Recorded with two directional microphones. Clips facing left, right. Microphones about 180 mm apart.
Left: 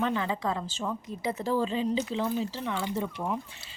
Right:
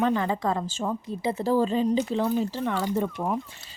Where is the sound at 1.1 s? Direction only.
35° right (ahead or behind); by 3.4 s 50° right (ahead or behind).